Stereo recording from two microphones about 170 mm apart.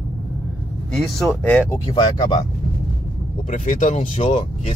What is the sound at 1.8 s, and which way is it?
Speech, 25° left (ahead or behind).